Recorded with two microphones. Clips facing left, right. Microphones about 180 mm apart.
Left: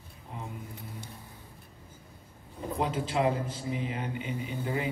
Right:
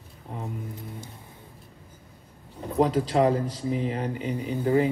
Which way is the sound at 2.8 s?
35° right (ahead or behind).